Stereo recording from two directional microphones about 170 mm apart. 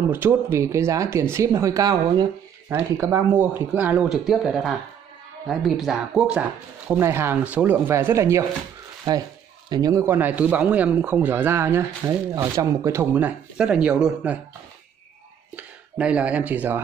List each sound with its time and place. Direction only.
0.1 s a man's voice: 15° right (ahead or behind)
6.9 s a man's voice: 15° right (ahead or behind)
9.7 s a man's voice: 25° right (ahead or behind); by 14.4 s 5° right (ahead or behind)
15.5 s speech: 5° right (ahead or behind)